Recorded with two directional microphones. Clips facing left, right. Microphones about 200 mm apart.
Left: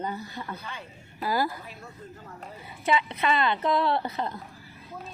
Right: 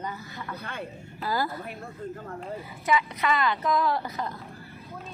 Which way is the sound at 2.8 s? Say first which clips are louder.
Even; 25° left (ahead or behind).